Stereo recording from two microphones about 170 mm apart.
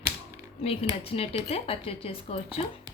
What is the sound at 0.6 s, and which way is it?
Speech, 35° left (ahead or behind).